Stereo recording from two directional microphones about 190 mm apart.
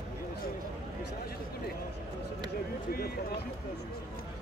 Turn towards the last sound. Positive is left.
turn(degrees=55)  # may be behind; listen again after turning